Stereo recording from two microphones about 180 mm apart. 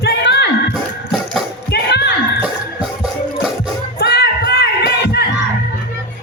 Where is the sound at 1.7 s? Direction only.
65° left (ahead or behind).